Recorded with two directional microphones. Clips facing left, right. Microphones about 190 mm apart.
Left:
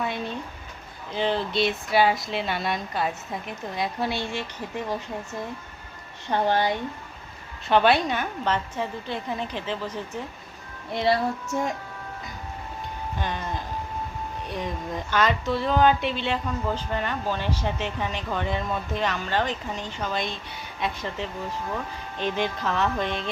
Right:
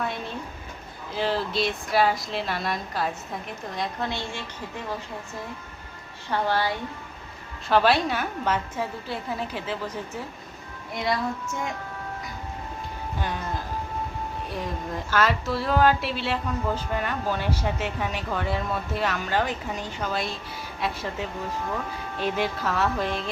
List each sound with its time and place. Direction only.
0.0 s a sound: centre (ahead or behind)
1.1 s speech: 5° right (ahead or behind)
3.8 s a woman's voice: 10° left (ahead or behind)
6.3 s a woman's voice: 20° left (ahead or behind)
7.7 s speech: centre (ahead or behind)
10.9 s a woman's voice: 30° left (ahead or behind)
13.1 s speech: 10° right (ahead or behind)
14.5 s speech: centre (ahead or behind)